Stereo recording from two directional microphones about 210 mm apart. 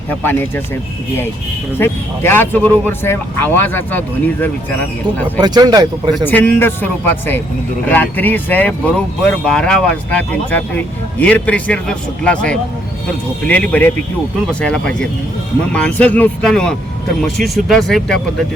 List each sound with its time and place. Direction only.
0.1 s speech: 10° left (ahead or behind)
1.8 s speech: 10° left (ahead or behind)
5.4 s speech: 20° right (ahead or behind)
6.2 s speech: 10° left (ahead or behind)